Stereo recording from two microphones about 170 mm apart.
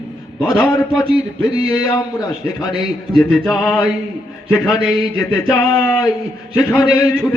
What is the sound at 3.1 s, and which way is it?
Speech, centre (ahead or behind).